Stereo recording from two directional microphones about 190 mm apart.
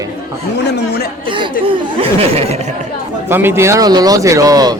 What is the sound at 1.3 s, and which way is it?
Speech, 25° right (ahead or behind).